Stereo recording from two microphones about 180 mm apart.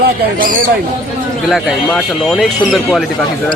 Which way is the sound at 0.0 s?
50° right (ahead or behind).